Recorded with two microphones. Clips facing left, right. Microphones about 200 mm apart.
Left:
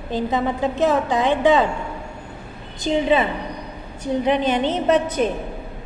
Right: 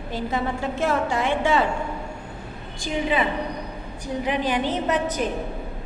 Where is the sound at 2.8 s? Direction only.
25° left (ahead or behind).